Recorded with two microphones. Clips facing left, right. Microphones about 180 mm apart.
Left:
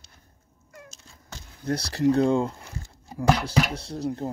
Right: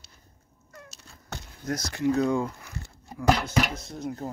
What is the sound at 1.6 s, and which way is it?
Speech, 30° left (ahead or behind).